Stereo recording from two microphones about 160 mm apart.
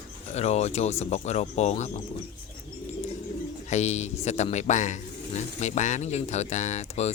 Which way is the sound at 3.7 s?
45° left (ahead or behind).